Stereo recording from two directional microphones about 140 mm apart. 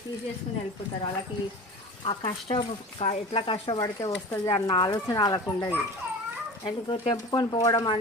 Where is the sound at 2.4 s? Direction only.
35° left (ahead or behind).